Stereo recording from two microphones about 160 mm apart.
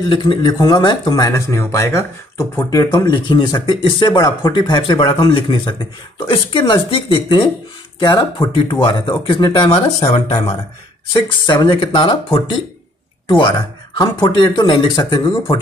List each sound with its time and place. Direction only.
0.1 s speech: 30° left (ahead or behind)